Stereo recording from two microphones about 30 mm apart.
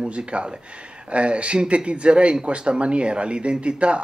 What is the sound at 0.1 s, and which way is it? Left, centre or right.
Speech, right.